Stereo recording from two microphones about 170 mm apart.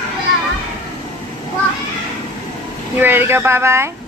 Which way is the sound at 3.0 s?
10° right (ahead or behind).